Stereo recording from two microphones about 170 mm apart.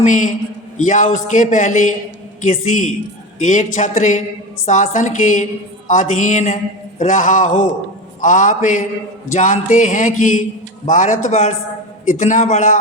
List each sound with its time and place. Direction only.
0.0 s a man's voice: 50° left (ahead or behind)